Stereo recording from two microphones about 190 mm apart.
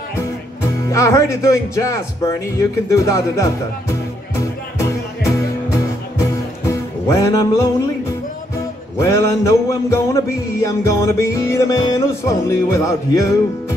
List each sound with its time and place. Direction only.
0.8 s music: 15° left (ahead or behind)
8.9 s music: 15° left (ahead or behind)